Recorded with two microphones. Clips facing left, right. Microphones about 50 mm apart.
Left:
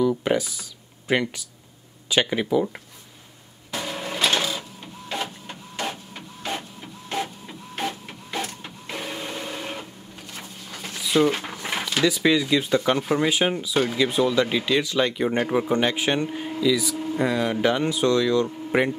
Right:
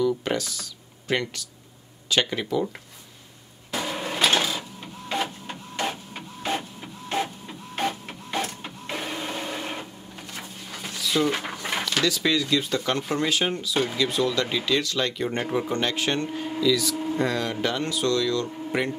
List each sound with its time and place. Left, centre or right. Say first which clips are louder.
0.0 s computer keyboard: left 3 dB; centre
2.0 s speech: left 3 dB; centre
3.7 s sewing machine: right 1 dB; centre
5.1 s printer: right 2 dB; centre
10.3 s a sound: even; centre
10.9 s a sound: left 4 dB; centre
11.6 s speech: left 3 dB; centre
16.9 s a sound: even; centre
17.2 s speech: left 5 dB; centre